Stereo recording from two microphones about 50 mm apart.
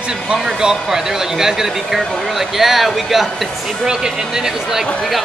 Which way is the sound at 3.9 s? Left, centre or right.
Centre.